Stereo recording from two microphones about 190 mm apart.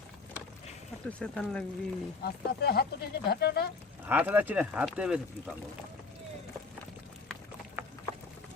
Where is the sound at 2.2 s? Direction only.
55° left (ahead or behind).